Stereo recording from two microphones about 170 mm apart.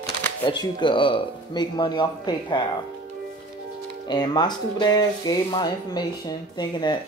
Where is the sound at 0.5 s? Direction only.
25° left (ahead or behind).